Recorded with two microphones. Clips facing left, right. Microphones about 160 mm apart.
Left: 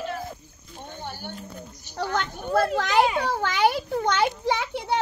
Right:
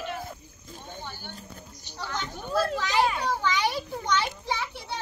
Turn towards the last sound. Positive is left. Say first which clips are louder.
# left 7 dB
turn(degrees=70)  # may be behind; listen again after turning